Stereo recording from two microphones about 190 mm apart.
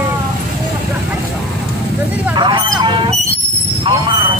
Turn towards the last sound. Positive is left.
turn(degrees=-25)  # may be behind; listen again after turning